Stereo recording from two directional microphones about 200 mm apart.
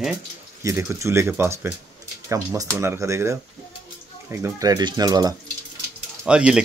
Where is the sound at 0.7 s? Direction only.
15° right (ahead or behind).